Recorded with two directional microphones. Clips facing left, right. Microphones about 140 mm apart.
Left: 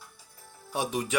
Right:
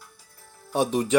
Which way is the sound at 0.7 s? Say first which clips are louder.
Right 7 dB; 25° right (ahead or behind).